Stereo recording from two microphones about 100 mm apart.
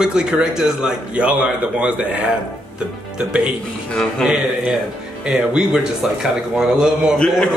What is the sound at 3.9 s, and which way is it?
A man's voice, centre (ahead or behind).